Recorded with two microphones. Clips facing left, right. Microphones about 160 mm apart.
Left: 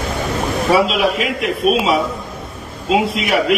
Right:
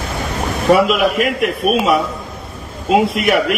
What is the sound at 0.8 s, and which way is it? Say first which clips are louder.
Speech: right 2 dB; 55° right (ahead or behind).